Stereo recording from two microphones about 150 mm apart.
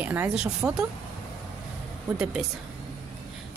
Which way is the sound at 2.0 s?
5° right (ahead or behind).